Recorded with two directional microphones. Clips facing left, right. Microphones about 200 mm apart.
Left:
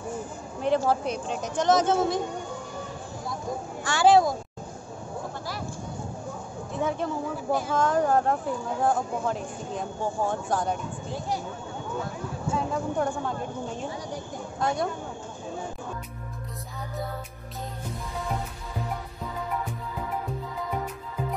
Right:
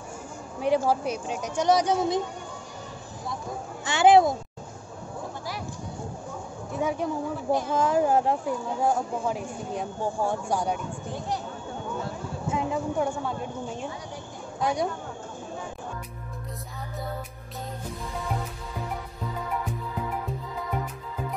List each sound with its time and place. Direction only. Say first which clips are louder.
0.6 s speech: even; 10° right (ahead or behind)
3.8 s speech: right 2 dB; 20° right (ahead or behind)
6.7 s a sound: right 1 dB; 10° right (ahead or behind)
7.7 s speech: even; 10° right (ahead or behind)
12.4 s speech: right 1 dB; 15° right (ahead or behind)
12.9 s a woman's voice: even; 5° right (ahead or behind)